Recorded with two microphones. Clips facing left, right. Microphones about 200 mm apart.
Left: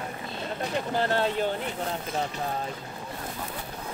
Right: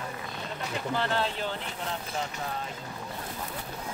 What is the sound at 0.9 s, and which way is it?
Speech, 40° left (ahead or behind).